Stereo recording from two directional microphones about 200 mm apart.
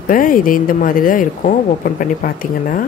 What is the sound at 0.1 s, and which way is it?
A woman's voice, 45° left (ahead or behind).